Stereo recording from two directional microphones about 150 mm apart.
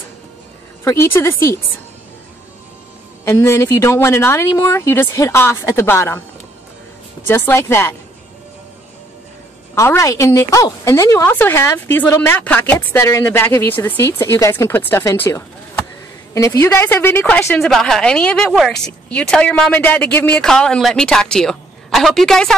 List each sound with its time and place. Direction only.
0.8 s speech: 15° left (ahead or behind)
3.3 s speech: 20° left (ahead or behind)
7.2 s speech: 15° left (ahead or behind)
9.8 s a woman's voice: 20° left (ahead or behind)
17.6 s a woman's voice: centre (ahead or behind)